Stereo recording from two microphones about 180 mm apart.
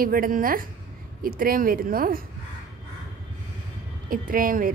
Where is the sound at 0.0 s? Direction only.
50° right (ahead or behind).